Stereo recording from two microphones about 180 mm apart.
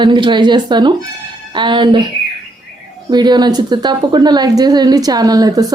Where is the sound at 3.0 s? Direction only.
25° right (ahead or behind).